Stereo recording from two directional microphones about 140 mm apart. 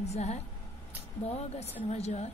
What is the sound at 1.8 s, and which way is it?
Speech, 50° left (ahead or behind).